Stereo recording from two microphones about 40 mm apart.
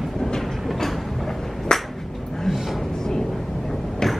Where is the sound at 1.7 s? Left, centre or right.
Centre.